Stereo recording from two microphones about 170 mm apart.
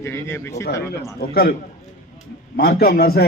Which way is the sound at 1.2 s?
60° left (ahead or behind).